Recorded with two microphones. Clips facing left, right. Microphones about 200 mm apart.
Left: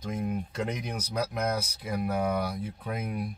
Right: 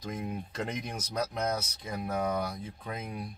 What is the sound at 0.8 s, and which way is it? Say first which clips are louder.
Speech: left 2 dB; 5° left (ahead or behind).